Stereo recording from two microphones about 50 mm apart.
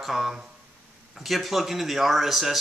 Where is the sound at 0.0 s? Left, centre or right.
Centre.